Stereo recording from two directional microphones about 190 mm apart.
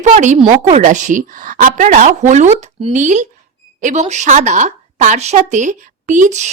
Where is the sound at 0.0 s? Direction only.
40° right (ahead or behind).